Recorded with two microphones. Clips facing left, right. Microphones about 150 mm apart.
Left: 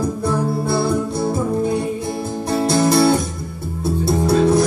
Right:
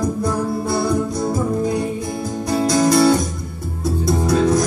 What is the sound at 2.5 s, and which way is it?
Music, 25° left (ahead or behind).